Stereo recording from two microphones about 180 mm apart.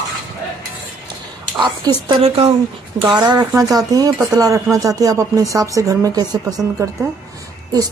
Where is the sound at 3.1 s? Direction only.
20° right (ahead or behind).